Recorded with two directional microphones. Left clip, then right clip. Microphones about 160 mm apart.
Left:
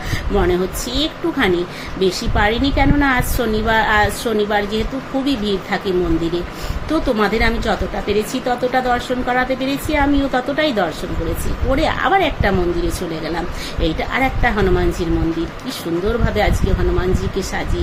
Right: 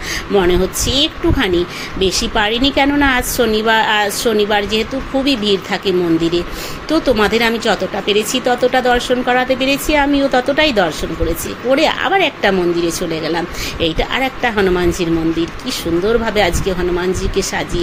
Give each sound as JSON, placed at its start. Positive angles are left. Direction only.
{"t": 0.3, "sound": "a woman's voice", "side_deg": -15}
{"t": 6.9, "sound": "a woman's voice", "side_deg": -15}
{"t": 13.8, "sound": "a woman's voice", "side_deg": -15}
{"t": 16.3, "sound": "a woman's voice", "side_deg": -15}